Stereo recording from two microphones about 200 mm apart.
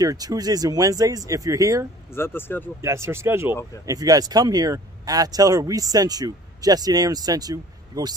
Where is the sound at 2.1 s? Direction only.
10° left (ahead or behind).